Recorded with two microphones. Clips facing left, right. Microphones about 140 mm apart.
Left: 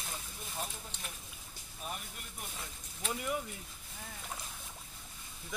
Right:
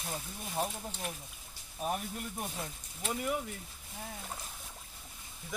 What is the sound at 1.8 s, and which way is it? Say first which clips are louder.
Speech: right 9 dB; 50° right (ahead or behind).